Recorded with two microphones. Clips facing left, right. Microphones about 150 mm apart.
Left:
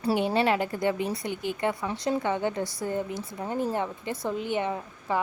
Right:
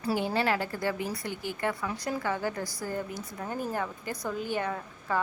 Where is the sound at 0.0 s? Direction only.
25° left (ahead or behind).